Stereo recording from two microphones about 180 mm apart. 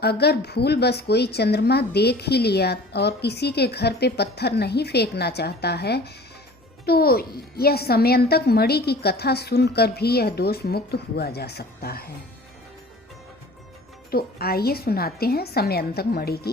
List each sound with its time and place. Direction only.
0.0 s speech: 65° left (ahead or behind)
14.1 s speech: 60° left (ahead or behind)